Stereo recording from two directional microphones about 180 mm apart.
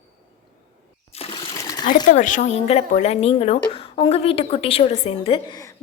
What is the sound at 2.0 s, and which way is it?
A woman's voice, 45° left (ahead or behind).